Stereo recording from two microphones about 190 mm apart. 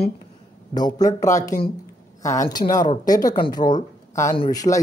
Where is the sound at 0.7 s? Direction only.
20° left (ahead or behind).